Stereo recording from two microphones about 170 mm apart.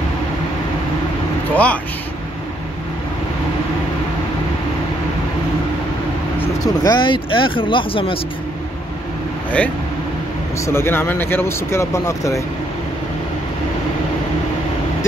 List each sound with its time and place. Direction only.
1.5 s a man's voice: 10° left (ahead or behind)
6.4 s speech: 20° left (ahead or behind)
10.6 s speech: 15° left (ahead or behind)